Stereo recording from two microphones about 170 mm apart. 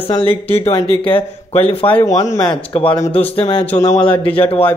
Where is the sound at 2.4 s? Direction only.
30° left (ahead or behind).